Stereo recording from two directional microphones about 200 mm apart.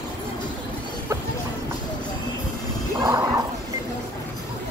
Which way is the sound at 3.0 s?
20° right (ahead or behind).